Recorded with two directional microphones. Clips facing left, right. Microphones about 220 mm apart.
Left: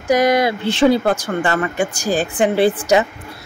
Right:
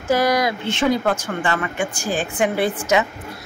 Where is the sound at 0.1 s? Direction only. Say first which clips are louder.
Left 4 dB; 20° left (ahead or behind).